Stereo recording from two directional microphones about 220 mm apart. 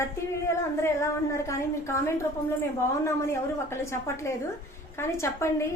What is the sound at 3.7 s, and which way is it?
A woman's voice, 10° left (ahead or behind).